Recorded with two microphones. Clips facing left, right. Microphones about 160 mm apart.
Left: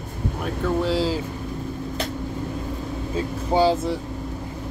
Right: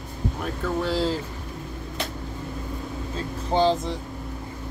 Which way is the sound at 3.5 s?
10° left (ahead or behind).